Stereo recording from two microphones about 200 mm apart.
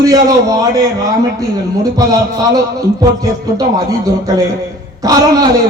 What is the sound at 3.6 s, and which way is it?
Speech, 15° right (ahead or behind).